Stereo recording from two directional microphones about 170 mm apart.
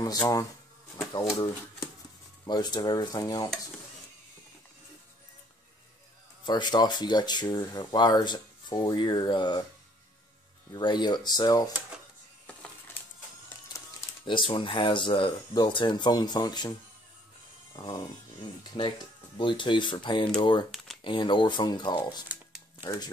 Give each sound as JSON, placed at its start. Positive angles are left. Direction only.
{"t": 0.0, "sound": "speech", "side_deg": 20}
{"t": 6.4, "sound": "speech", "side_deg": 25}
{"t": 10.7, "sound": "speech", "side_deg": 25}
{"t": 13.7, "sound": "speech", "side_deg": 30}
{"t": 17.7, "sound": "speech", "side_deg": 25}
{"t": 20.7, "sound": "a sound", "side_deg": 0}
{"t": 21.0, "sound": "speech", "side_deg": 30}